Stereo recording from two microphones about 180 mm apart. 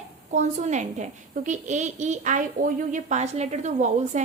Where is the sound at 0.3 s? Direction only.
40° right (ahead or behind).